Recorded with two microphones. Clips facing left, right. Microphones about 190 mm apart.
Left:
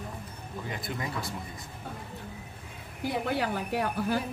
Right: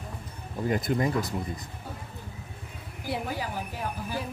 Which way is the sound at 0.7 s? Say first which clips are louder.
Right 10 dB; 45° right (ahead or behind).